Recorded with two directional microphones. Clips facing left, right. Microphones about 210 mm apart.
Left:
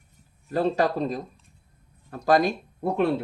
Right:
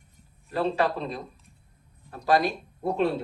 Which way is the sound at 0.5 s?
45° left (ahead or behind).